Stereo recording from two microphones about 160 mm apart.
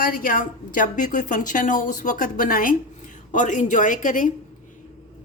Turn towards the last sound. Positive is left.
turn(degrees=55)  # may be behind; listen again after turning